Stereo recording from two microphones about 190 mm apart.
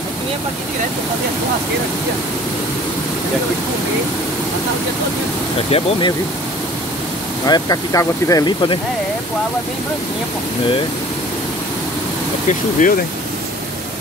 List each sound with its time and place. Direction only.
5.7 s speech: 25° left (ahead or behind)
7.4 s speech: 20° left (ahead or behind)
12.4 s speech: 45° left (ahead or behind)